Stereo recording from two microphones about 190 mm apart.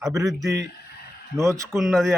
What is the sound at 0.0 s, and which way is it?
Speech, 15° right (ahead or behind).